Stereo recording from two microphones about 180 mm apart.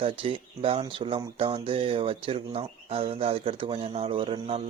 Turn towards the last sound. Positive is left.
turn(degrees=-30)  # may be behind; listen again after turning